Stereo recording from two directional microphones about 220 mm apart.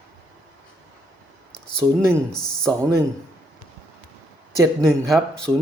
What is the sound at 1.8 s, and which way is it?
Speech, 20° right (ahead or behind).